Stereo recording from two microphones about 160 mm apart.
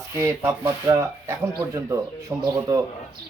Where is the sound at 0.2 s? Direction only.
20° right (ahead or behind).